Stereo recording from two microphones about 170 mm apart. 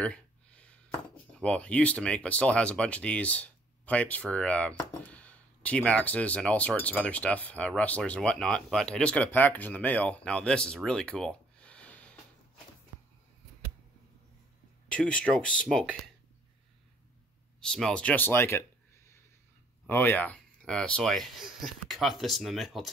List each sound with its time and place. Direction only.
0.0 s speech: 5° left (ahead or behind)
14.9 s speech: 5° left (ahead or behind)
17.6 s speech: 5° left (ahead or behind)
19.9 s speech: 10° left (ahead or behind)